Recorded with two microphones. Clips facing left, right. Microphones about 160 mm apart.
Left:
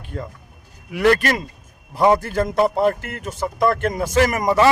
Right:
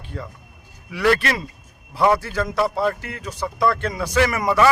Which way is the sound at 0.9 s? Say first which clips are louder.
Left 3 dB; 45° left (ahead or behind).